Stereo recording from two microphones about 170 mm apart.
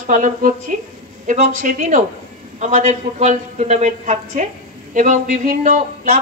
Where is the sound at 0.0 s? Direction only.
50° right (ahead or behind).